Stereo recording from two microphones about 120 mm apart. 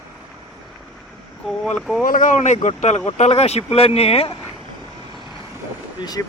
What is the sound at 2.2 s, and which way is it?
Speech, 85° left.